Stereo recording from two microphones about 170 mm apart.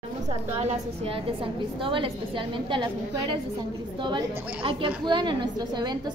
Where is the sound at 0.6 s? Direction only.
35° right (ahead or behind).